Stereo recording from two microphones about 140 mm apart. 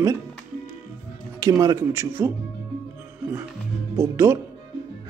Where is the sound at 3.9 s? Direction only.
20° right (ahead or behind).